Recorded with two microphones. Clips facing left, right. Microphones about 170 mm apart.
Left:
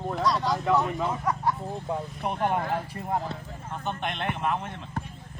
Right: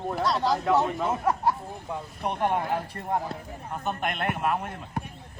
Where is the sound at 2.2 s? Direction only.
Centre (ahead or behind).